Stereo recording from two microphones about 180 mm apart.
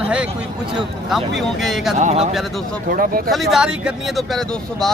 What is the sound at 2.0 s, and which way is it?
Speech, 40° right (ahead or behind).